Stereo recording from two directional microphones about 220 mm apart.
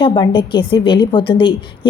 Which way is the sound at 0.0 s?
20° left (ahead or behind).